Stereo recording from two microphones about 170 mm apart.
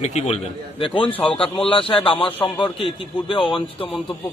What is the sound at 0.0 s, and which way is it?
Speech, 40° left (ahead or behind).